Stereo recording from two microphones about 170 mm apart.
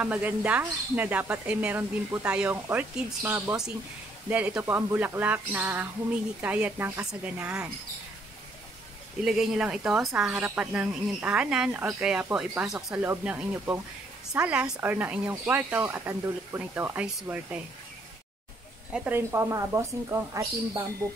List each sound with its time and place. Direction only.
0.0 s a woman's voice: 10° right (ahead or behind)
9.2 s a woman's voice: centre (ahead or behind)
18.9 s a woman's voice: 10° right (ahead or behind)